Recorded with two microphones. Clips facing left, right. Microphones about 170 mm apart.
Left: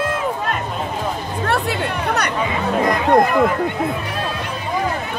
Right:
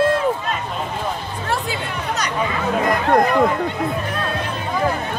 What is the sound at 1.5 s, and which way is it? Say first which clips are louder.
Music: left 3 dB; 65° left (ahead or behind).